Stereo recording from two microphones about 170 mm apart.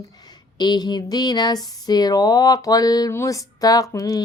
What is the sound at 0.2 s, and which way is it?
Speech, 25° left (ahead or behind).